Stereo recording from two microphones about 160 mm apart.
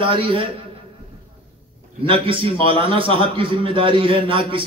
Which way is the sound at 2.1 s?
35° right (ahead or behind).